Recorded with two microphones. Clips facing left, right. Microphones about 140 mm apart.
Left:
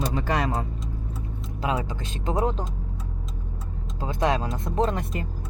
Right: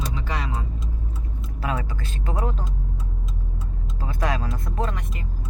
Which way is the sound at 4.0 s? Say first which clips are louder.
Left 3 dB; 20° left (ahead or behind).